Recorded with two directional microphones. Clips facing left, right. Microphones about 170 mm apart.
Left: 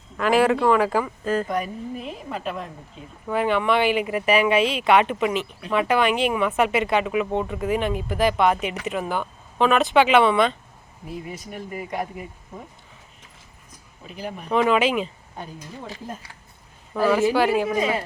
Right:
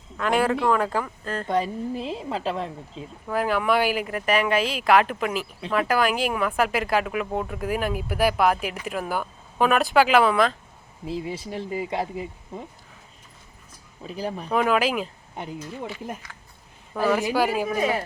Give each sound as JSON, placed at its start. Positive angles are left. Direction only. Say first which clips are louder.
{"t": 0.2, "sound": "speech", "louder": "left 4 dB", "side_deg": 0}
{"t": 1.5, "sound": "a woman's voice", "louder": "right 2 dB", "side_deg": -30}
{"t": 3.2, "sound": "speech", "louder": "left 2 dB", "side_deg": 0}
{"t": 11.0, "sound": "a woman's voice", "louder": "right 4 dB", "side_deg": -25}
{"t": 14.1, "sound": "speech", "louder": "right 3 dB", "side_deg": -35}
{"t": 14.5, "sound": "speech", "louder": "left 3 dB", "side_deg": -5}
{"t": 15.4, "sound": "a woman's voice", "louder": "right 2 dB", "side_deg": -20}
{"t": 17.2, "sound": "speech", "louder": "left 4 dB", "side_deg": -15}